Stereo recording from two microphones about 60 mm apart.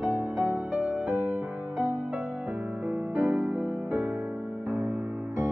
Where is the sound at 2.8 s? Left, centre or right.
Right.